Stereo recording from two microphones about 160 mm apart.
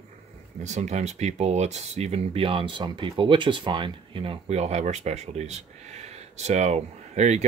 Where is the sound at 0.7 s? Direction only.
45° right (ahead or behind).